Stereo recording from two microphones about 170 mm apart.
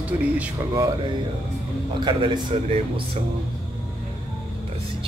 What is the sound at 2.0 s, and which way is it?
A man's voice, 30° right (ahead or behind).